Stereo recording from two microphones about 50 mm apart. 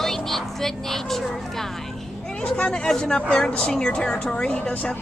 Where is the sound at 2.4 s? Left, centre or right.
Left.